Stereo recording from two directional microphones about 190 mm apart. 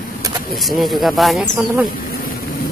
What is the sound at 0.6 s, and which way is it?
Speech, centre (ahead or behind).